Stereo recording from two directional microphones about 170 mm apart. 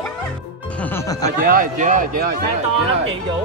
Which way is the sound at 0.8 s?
15° left (ahead or behind).